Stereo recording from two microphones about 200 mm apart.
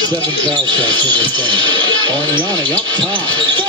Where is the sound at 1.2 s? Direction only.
20° right (ahead or behind).